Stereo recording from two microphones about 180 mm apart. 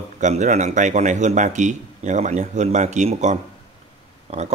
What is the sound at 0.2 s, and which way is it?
Speech, 40° right (ahead or behind).